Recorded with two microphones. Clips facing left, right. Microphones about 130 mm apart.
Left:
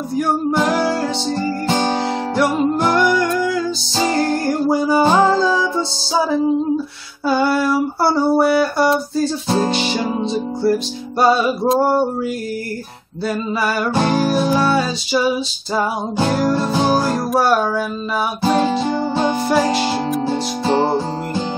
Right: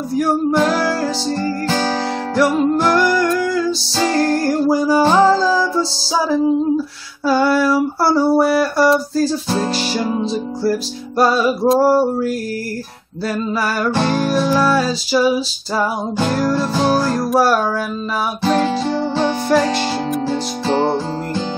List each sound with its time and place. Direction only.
0.1 s music: centre (ahead or behind)
1.7 s music: 20° left (ahead or behind)
2.3 s music: centre (ahead or behind)
7.2 s music: centre (ahead or behind)
13.3 s music: 5° left (ahead or behind)